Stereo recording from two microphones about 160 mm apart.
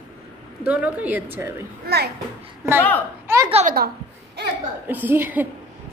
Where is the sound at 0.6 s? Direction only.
10° right (ahead or behind).